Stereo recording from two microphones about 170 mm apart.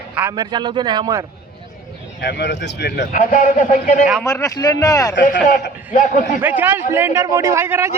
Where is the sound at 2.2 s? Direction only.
85° left.